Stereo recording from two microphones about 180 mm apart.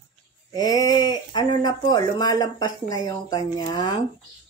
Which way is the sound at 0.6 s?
20° left (ahead or behind).